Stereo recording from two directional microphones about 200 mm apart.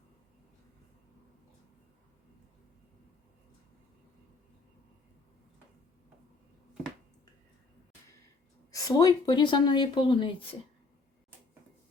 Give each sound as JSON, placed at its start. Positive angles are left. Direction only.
{"t": 8.7, "sound": "speech", "side_deg": 20}